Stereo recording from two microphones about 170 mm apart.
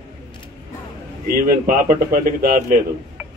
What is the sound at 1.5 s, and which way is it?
A man's voice, 55° right (ahead or behind).